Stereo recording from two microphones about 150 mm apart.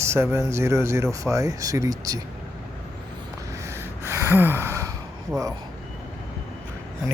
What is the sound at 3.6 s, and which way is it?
Gasp, 15° right (ahead or behind).